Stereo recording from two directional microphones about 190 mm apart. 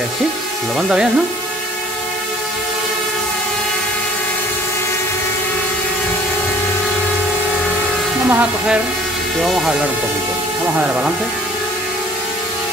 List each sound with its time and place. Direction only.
0.7 s speech: 5° right (ahead or behind)
8.3 s speech: 10° right (ahead or behind)